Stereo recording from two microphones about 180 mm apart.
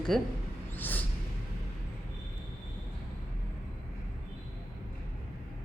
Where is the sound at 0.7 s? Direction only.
10° left (ahead or behind).